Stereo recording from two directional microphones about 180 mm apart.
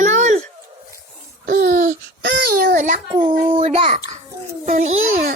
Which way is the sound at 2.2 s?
60° right (ahead or behind).